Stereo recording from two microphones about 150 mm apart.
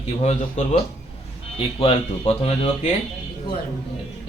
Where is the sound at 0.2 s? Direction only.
50° left (ahead or behind).